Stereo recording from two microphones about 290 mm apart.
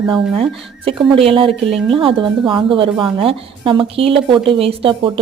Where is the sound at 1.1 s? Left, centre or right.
Centre.